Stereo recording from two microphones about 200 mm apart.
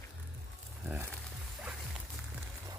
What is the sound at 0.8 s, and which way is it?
Music, 10° right (ahead or behind).